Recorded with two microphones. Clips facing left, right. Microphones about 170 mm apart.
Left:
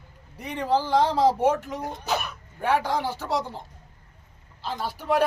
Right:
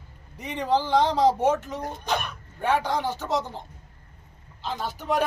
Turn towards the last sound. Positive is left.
turn(degrees=0)  # may be behind; listen again after turning